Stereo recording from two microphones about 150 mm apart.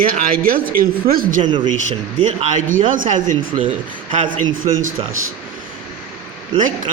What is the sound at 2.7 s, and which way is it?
Speech, 60° right (ahead or behind).